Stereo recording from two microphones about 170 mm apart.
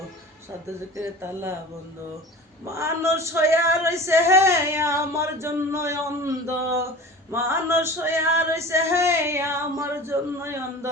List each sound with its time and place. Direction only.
0.9 s male singing: 15° right (ahead or behind)
2.6 s male singing: 15° right (ahead or behind)